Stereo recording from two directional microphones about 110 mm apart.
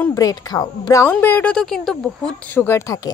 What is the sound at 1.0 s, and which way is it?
Speech, 20° left (ahead or behind).